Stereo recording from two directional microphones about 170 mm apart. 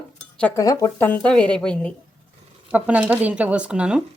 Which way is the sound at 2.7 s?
10° right (ahead or behind).